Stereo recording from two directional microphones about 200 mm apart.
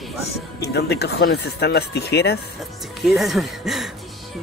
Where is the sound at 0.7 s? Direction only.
55° left (ahead or behind).